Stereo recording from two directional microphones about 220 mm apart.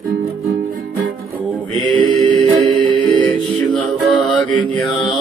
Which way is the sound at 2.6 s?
20° right (ahead or behind).